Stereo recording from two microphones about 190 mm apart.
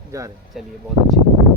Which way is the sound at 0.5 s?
Centre (ahead or behind).